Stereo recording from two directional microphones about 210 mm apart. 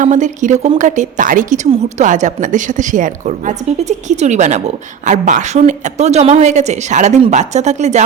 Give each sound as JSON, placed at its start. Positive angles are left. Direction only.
{"t": 0.0, "sound": "a woman's voice", "side_deg": -35}